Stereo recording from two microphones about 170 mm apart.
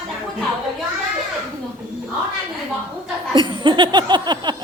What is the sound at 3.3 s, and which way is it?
A woman's voice, 25° right (ahead or behind).